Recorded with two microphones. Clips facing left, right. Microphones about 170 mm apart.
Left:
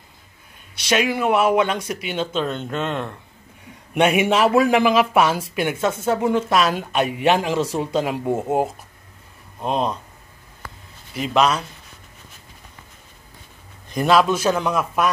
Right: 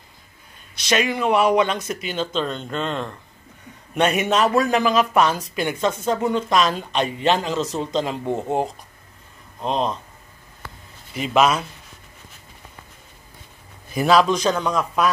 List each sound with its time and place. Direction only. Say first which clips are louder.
0.7 s speech: left 1 dB; 10° left (ahead or behind)
11.1 s a man's voice: right 1 dB; 5° right (ahead or behind)
13.8 s a man's voice: even; 5° right (ahead or behind)